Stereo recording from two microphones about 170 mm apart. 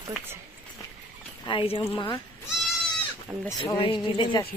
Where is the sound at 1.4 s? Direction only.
30° left (ahead or behind).